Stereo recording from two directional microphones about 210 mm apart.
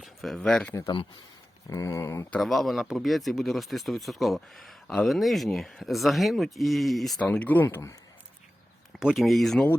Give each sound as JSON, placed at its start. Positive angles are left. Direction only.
{"t": 0.0, "sound": "speech", "side_deg": 0}
{"t": 0.7, "sound": "speech", "side_deg": 15}
{"t": 2.4, "sound": "speech", "side_deg": 0}
{"t": 9.0, "sound": "speech", "side_deg": 0}